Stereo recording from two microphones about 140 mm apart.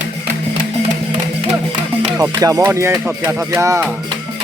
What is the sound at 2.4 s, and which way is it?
Speech, 20° right (ahead or behind).